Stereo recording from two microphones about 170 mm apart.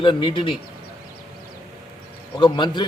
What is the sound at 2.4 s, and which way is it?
Speech, 30° left (ahead or behind).